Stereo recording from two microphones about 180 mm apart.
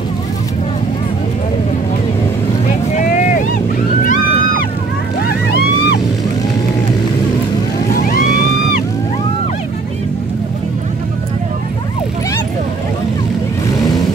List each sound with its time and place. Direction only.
3.0 s vehicle: 45° left (ahead or behind)
4.0 s music: 50° left (ahead or behind)
5.2 s vehicle: 60° left (ahead or behind)
8.1 s music: 50° left (ahead or behind)